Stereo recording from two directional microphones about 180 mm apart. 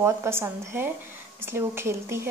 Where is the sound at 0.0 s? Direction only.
15° right (ahead or behind).